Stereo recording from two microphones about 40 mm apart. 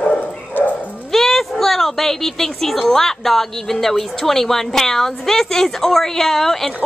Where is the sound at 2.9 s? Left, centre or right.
Centre.